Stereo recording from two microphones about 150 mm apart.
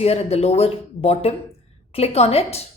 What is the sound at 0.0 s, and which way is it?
Speech, 45° left (ahead or behind).